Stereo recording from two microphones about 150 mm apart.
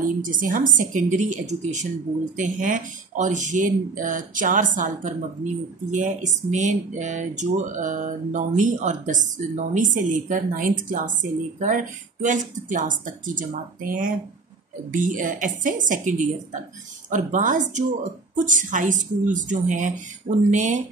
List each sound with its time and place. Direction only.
0.2 s speech: 65° right (ahead or behind)